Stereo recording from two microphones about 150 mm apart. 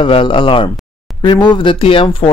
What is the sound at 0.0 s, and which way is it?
Speech, 35° left (ahead or behind).